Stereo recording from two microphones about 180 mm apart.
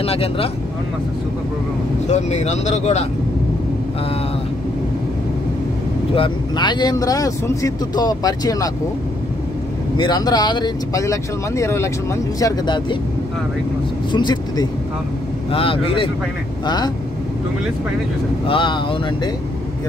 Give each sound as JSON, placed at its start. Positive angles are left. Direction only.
{"t": 0.0, "sound": "speech", "side_deg": 35}
{"t": 2.0, "sound": "speech", "side_deg": 40}
{"t": 6.1, "sound": "speech", "side_deg": 25}
{"t": 9.9, "sound": "speech", "side_deg": 25}
{"t": 14.1, "sound": "speech", "side_deg": 25}
{"t": 18.5, "sound": "speech", "side_deg": 30}